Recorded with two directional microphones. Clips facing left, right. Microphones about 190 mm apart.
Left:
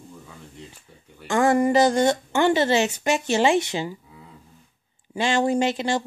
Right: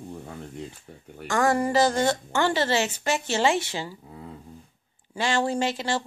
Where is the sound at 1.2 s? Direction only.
20° left (ahead or behind).